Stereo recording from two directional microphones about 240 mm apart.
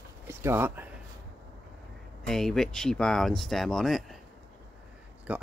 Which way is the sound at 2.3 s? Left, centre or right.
Centre.